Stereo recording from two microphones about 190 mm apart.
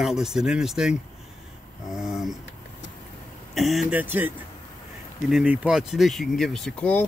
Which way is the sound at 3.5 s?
Centre (ahead or behind).